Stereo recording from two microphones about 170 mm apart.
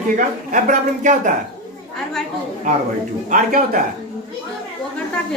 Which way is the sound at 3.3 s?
55° right (ahead or behind).